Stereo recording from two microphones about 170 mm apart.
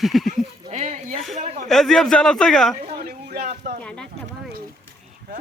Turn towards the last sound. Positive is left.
turn(degrees=5)  # may be behind; listen again after turning